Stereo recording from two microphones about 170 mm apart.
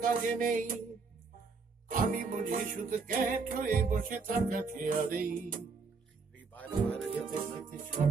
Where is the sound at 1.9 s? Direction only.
50° right (ahead or behind).